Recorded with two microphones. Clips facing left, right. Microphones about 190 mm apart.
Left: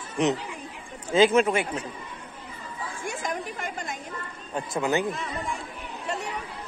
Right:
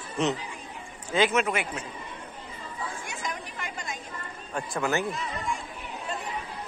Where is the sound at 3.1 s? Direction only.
50° left (ahead or behind).